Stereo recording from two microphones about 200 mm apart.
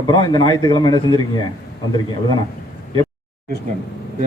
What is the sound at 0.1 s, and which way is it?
A man's voice, 20° left (ahead or behind).